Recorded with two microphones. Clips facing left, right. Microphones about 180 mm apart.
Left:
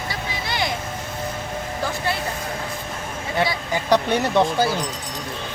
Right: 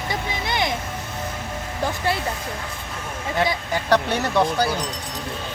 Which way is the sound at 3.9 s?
20° left (ahead or behind).